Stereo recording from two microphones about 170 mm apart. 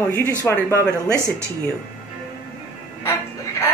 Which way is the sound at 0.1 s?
15° left (ahead or behind).